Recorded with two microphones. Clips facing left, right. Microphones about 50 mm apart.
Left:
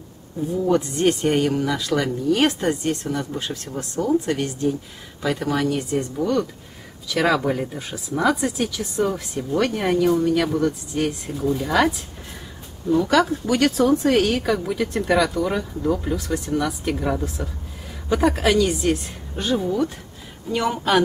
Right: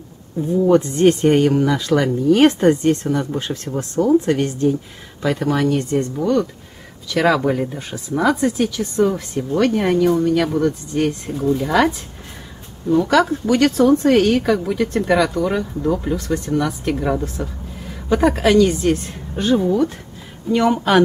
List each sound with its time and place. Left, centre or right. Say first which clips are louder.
0.7 s speech: right 6 dB; centre
12.9 s speech: right 3 dB; centre